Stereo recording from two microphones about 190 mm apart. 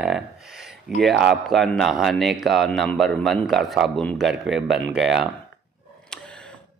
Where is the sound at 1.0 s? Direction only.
Centre (ahead or behind).